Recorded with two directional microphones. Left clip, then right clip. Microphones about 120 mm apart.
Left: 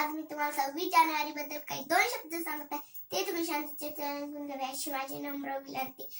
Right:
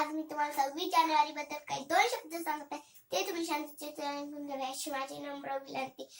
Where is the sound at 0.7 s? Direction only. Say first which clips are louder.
Left 1 dB; 15° right (ahead or behind).